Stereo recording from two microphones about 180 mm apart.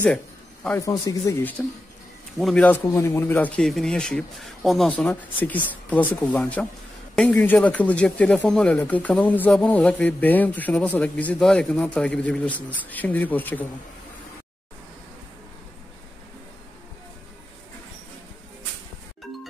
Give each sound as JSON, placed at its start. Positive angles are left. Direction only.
{"t": 0.7, "sound": "speech", "side_deg": 20}
{"t": 2.3, "sound": "speech", "side_deg": 5}